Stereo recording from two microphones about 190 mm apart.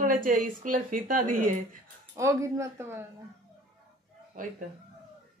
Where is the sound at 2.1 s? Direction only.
15° right (ahead or behind).